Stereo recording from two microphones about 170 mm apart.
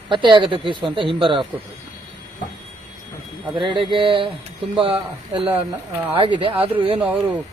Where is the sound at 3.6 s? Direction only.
30° right (ahead or behind).